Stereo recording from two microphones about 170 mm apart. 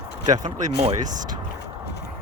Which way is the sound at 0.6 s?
45° right (ahead or behind).